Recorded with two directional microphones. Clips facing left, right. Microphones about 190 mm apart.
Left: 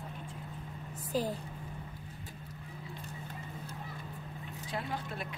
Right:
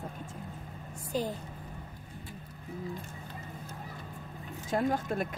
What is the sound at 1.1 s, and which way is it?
Speech, centre (ahead or behind).